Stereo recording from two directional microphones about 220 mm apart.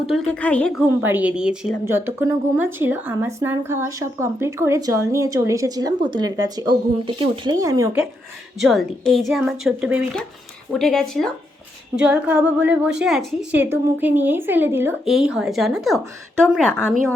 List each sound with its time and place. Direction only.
0.1 s a woman's voice: 5° left (ahead or behind)
1.0 s speech: 5° right (ahead or behind)
8.5 s a woman's voice: centre (ahead or behind)